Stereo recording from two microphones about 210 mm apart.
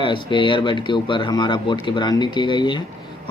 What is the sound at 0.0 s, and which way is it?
Speech, 25° left (ahead or behind).